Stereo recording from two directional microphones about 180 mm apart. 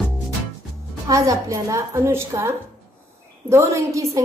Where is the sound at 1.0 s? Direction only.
20° right (ahead or behind).